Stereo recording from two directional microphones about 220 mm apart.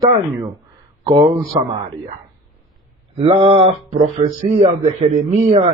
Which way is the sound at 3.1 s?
25° right (ahead or behind).